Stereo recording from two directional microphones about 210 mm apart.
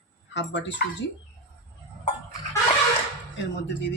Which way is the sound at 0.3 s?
60° left (ahead or behind).